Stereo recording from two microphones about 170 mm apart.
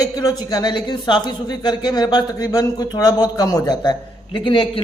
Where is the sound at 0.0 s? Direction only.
20° left (ahead or behind).